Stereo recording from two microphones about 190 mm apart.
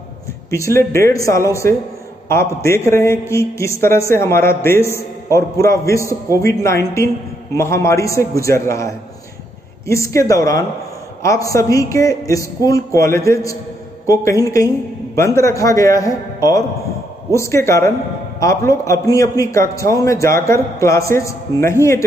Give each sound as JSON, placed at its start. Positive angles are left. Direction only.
{"t": 0.5, "sound": "a man's voice", "side_deg": 15}